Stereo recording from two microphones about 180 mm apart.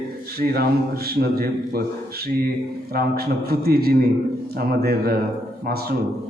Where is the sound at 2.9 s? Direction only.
60° right (ahead or behind).